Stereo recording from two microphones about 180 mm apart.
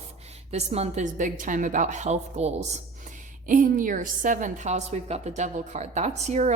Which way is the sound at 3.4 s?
50° right (ahead or behind).